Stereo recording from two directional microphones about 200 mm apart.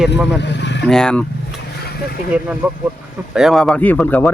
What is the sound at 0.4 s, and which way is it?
Speech, 60° left (ahead or behind).